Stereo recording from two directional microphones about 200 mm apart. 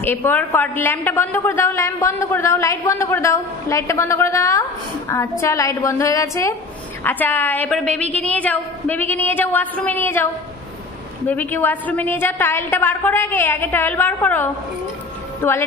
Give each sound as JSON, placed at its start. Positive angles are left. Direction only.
{"t": 0.0, "sound": "a woman's voice", "side_deg": 10}
{"t": 11.2, "sound": "a woman's voice", "side_deg": 10}